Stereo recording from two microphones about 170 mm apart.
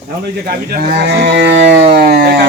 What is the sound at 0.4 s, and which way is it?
Speech, 55° right (ahead or behind).